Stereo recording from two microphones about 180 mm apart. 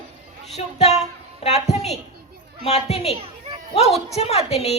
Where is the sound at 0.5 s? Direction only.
35° left (ahead or behind).